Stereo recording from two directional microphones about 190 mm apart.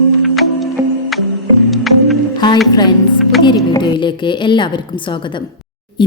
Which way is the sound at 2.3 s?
25° left (ahead or behind).